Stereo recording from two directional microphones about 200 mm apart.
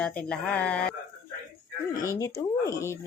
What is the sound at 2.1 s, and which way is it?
Speech, 15° left (ahead or behind).